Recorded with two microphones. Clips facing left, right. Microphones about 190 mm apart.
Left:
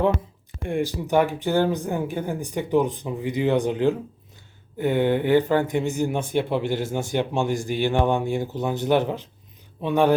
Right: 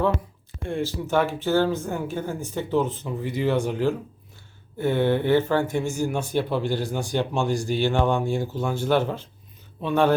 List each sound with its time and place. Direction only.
0.6 s speech: 15° left (ahead or behind)